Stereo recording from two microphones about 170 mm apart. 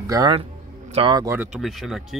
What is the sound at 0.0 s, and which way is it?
A man's voice, 20° right (ahead or behind).